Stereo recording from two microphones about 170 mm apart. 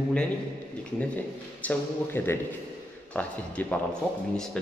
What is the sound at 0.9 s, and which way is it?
A man's voice, 10° left (ahead or behind).